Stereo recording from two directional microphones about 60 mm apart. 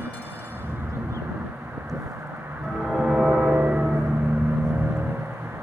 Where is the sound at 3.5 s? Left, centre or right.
Right.